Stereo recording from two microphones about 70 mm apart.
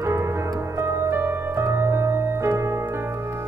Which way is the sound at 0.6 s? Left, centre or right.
Right.